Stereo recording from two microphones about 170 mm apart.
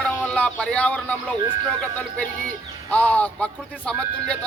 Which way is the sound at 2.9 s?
10° left (ahead or behind).